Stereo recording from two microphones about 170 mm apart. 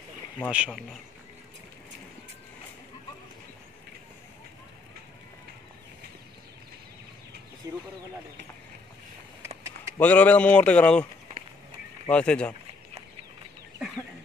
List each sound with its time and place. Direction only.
0.5 s speech: 5° right (ahead or behind)
7.6 s speech: 20° right (ahead or behind)
9.9 s speech: 10° left (ahead or behind)
12.1 s speech: 5° left (ahead or behind)